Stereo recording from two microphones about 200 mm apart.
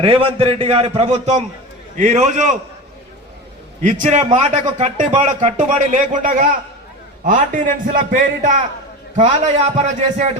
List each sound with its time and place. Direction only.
0.0 s a man's voice: 25° right (ahead or behind)
3.8 s a man's voice: 40° right (ahead or behind)